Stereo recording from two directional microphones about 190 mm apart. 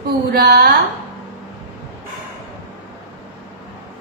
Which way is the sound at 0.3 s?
55° right (ahead or behind).